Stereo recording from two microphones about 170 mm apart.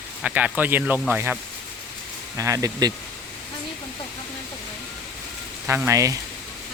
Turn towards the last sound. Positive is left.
turn(degrees=-20)  # may be behind; listen again after turning